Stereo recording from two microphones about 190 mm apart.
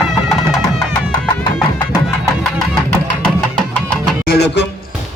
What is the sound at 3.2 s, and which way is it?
Music, 5° left (ahead or behind).